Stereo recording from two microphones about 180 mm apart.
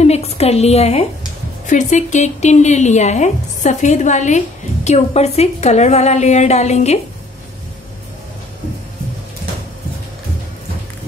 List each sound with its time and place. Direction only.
0.0 s a woman's voice: 35° left (ahead or behind)